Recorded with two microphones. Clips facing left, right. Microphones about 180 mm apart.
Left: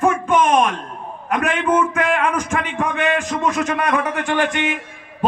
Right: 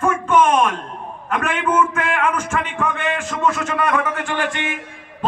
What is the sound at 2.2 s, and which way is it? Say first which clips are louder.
Speech: even; 40° left (ahead or behind).